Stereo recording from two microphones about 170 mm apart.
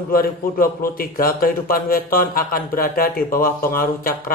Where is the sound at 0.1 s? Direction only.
60° left (ahead or behind).